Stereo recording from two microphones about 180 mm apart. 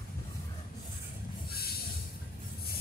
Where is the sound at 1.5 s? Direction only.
60° left (ahead or behind).